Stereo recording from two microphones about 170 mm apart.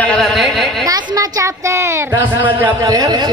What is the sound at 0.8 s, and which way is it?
A woman's voice, 25° right (ahead or behind).